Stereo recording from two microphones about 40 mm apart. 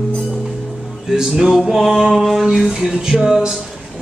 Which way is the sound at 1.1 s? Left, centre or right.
Centre.